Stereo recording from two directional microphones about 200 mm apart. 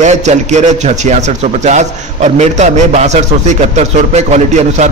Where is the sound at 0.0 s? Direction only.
35° right (ahead or behind).